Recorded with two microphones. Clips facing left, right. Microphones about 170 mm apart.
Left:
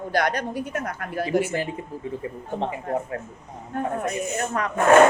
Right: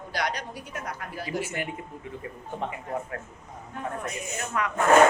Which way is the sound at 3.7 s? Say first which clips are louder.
Left 7 dB; 50° left (ahead or behind).